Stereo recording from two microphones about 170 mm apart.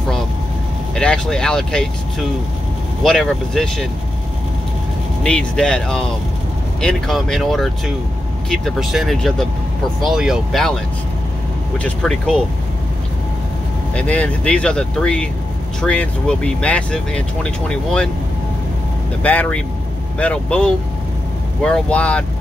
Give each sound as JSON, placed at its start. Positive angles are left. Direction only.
{"t": 0.9, "sound": "speech", "side_deg": 5}
{"t": 3.0, "sound": "speech", "side_deg": 0}
{"t": 5.2, "sound": "speech", "side_deg": 5}
{"t": 11.8, "sound": "speech", "side_deg": 5}
{"t": 13.9, "sound": "speech", "side_deg": 5}
{"t": 19.2, "sound": "speech", "side_deg": 10}